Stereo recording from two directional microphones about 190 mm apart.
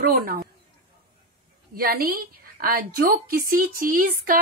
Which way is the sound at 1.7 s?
50° right (ahead or behind).